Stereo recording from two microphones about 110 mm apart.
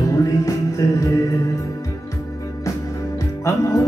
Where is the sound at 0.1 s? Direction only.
30° left (ahead or behind).